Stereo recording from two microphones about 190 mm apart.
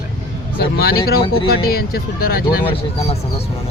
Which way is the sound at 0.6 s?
55° left (ahead or behind).